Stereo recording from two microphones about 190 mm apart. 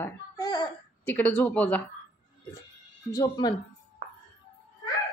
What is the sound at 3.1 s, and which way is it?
Speech, 20° left (ahead or behind).